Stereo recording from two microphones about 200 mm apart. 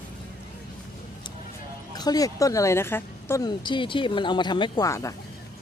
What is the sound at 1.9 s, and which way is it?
A woman's voice, 20° left (ahead or behind).